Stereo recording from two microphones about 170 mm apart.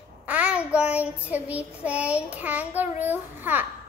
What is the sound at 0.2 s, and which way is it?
Child singing, 10° right (ahead or behind).